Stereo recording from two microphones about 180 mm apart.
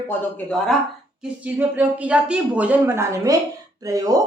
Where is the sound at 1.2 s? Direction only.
10° right (ahead or behind).